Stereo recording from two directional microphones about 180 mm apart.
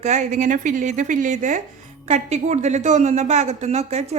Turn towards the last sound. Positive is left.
turn(degrees=-35)  # may be behind; listen again after turning